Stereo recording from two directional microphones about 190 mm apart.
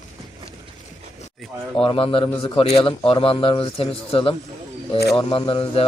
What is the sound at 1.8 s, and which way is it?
A man's voice, 30° left (ahead or behind).